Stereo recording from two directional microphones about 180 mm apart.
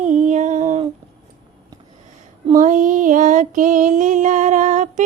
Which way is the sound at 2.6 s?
45° right (ahead or behind).